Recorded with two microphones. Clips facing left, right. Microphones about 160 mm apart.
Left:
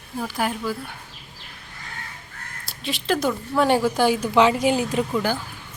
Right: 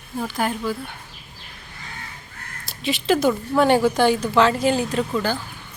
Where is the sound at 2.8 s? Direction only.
Centre (ahead or behind).